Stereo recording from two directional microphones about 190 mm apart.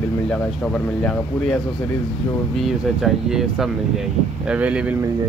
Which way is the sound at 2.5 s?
Centre (ahead or behind).